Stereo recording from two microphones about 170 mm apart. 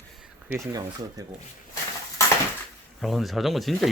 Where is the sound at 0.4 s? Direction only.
10° right (ahead or behind).